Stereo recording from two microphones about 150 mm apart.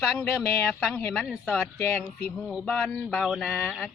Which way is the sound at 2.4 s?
5° left (ahead or behind).